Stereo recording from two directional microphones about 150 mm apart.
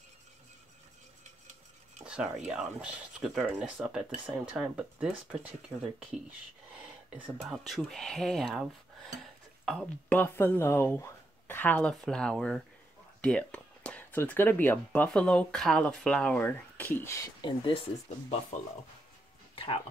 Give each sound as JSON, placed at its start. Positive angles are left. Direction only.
{"t": 2.0, "sound": "speech", "side_deg": -5}
{"t": 7.4, "sound": "speech", "side_deg": 0}
{"t": 10.1, "sound": "speech", "side_deg": 15}
{"t": 17.4, "sound": "speech", "side_deg": 35}
{"t": 19.5, "sound": "a sound", "side_deg": 35}